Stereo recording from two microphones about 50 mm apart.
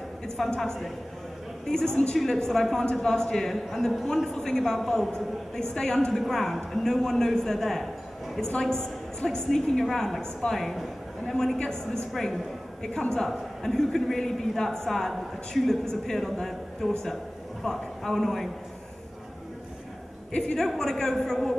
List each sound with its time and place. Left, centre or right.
0.6 s a woman's voice: centre
20.3 s a man's voice: centre